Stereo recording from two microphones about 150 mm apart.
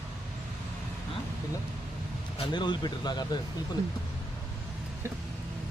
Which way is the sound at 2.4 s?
30° left (ahead or behind).